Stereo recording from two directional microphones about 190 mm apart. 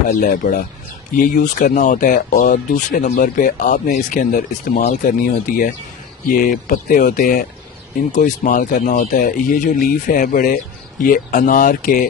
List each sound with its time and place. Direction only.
0.1 s speech: 45° left (ahead or behind)